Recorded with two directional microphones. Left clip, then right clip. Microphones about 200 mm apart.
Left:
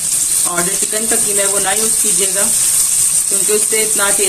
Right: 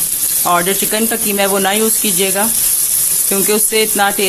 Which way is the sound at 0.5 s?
60° right (ahead or behind).